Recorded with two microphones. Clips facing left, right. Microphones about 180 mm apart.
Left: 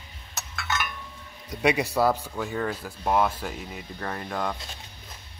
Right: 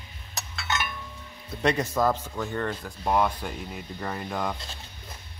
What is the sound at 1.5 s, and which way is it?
Speech, 10° left (ahead or behind).